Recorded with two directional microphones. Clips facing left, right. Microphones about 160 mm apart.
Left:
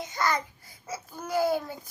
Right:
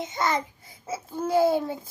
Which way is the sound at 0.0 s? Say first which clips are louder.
Right 2 dB; 25° right (ahead or behind).